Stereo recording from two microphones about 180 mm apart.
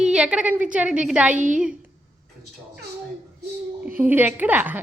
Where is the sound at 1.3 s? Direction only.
45° right (ahead or behind).